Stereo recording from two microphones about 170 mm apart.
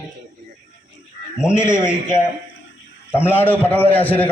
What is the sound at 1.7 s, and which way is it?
A man's voice, 15° left (ahead or behind).